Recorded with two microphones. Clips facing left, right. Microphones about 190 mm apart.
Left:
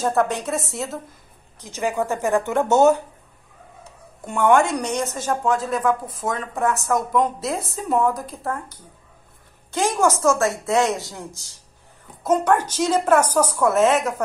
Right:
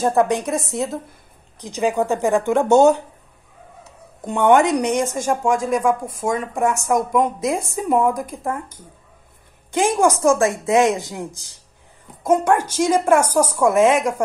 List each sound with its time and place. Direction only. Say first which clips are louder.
0.0 s a woman's voice: right 3 dB; 15° right (ahead or behind)
4.2 s a woman's voice: right 2 dB; 20° right (ahead or behind)
9.7 s a woman's voice: right 3 dB; 15° right (ahead or behind)